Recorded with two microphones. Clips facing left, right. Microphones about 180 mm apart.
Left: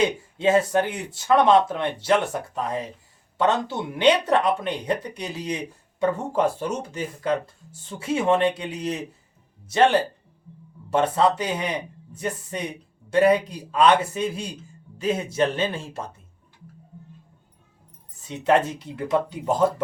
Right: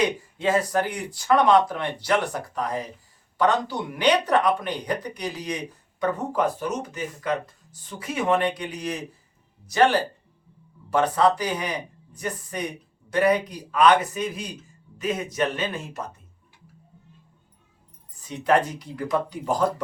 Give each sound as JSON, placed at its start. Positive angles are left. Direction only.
{"t": 0.0, "sound": "speech", "side_deg": 25}
{"t": 18.3, "sound": "speech", "side_deg": 25}